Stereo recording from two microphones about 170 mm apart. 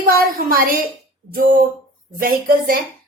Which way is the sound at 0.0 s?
60° right (ahead or behind).